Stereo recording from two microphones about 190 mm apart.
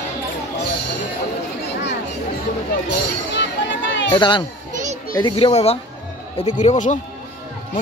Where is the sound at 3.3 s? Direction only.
70° left (ahead or behind).